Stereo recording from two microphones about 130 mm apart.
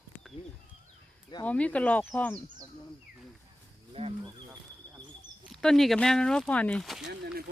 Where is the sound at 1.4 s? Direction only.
10° left (ahead or behind).